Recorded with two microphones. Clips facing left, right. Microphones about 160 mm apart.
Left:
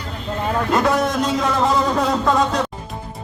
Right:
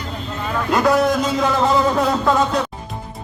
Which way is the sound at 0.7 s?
Centre (ahead or behind).